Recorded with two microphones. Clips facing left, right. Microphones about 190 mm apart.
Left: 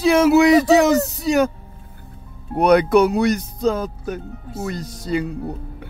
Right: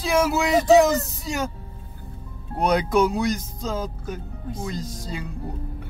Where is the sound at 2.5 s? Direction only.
65° left (ahead or behind).